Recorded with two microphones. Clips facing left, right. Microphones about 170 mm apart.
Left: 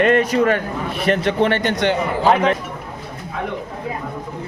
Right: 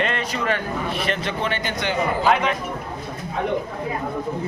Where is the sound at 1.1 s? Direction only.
65° left (ahead or behind).